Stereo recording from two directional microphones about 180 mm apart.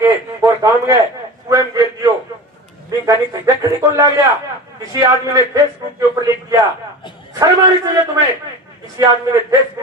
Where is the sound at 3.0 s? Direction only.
20° right (ahead or behind).